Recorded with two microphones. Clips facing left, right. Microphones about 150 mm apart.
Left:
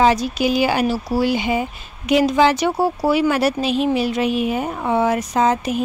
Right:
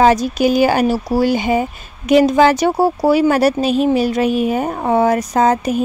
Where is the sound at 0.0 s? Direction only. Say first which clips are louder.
Right 4 dB; 45° right (ahead or behind).